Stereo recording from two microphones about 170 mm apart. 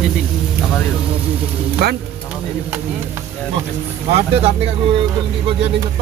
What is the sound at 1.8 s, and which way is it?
Speech, 70° right (ahead or behind).